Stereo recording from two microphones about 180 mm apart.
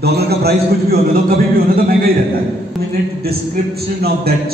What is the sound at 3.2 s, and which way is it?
A man's voice, 60° right (ahead or behind).